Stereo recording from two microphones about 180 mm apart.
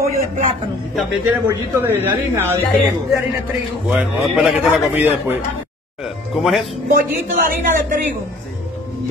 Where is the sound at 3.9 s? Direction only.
Centre (ahead or behind).